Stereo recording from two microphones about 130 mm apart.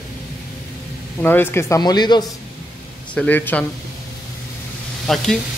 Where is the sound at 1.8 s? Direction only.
35° left (ahead or behind).